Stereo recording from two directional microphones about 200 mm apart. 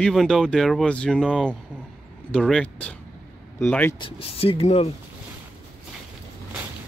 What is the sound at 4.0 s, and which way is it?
Speech, 25° left (ahead or behind).